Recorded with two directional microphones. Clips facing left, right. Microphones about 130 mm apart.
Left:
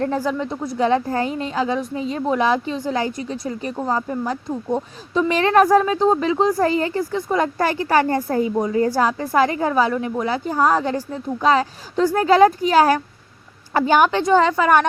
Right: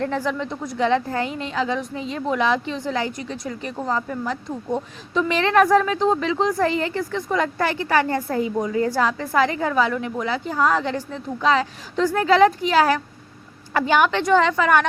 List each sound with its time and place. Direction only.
0.0 s a woman's voice: 40° left (ahead or behind)